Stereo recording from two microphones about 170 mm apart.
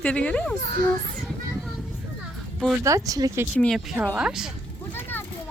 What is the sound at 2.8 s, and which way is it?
Speech, 20° right (ahead or behind).